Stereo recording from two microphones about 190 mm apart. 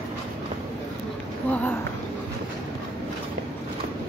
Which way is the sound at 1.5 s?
10° left (ahead or behind).